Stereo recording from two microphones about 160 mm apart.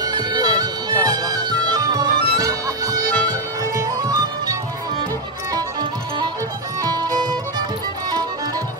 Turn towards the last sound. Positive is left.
turn(degrees=-25)  # may be behind; listen again after turning